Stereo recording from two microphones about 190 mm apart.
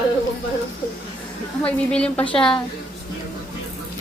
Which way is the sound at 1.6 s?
5° left (ahead or behind).